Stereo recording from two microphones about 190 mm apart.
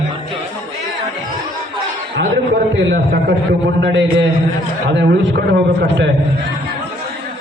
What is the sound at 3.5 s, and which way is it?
A man's voice, 70° right (ahead or behind).